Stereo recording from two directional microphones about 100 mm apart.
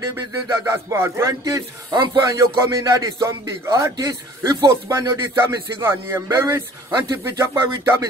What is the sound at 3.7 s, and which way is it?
Speech, 35° right (ahead or behind).